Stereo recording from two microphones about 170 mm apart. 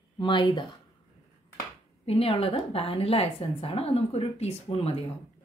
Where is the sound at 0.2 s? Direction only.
30° left (ahead or behind).